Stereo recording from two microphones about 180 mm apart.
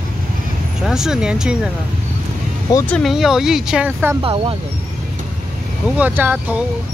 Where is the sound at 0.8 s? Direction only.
5° right (ahead or behind).